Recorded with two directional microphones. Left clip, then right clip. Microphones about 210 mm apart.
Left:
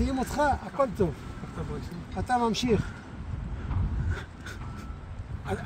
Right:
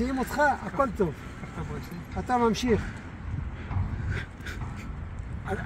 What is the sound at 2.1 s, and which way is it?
Speech, 15° left (ahead or behind).